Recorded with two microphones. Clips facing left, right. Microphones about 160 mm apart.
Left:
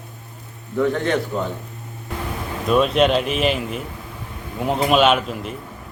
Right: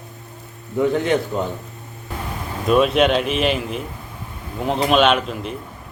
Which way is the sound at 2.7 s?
Centre (ahead or behind).